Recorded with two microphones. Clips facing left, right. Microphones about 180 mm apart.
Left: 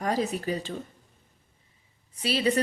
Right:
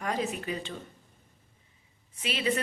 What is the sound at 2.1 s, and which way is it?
Speech, 35° left (ahead or behind).